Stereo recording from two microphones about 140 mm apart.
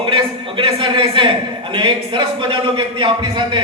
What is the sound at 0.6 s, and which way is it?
A man's voice, 40° right (ahead or behind).